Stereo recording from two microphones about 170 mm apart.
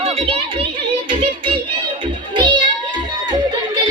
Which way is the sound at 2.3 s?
25° right (ahead or behind).